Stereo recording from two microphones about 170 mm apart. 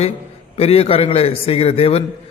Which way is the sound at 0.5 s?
35° left (ahead or behind).